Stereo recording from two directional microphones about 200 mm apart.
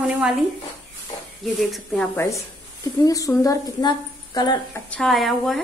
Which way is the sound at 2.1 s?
15° left (ahead or behind).